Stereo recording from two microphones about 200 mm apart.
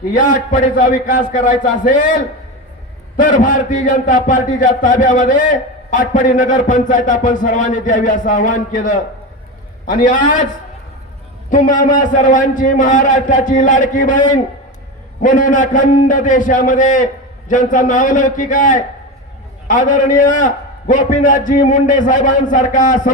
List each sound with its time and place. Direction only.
0.1 s a man's voice: 40° left (ahead or behind)
3.2 s a man's voice: 40° left (ahead or behind)
11.4 s a man's voice: 40° left (ahead or behind)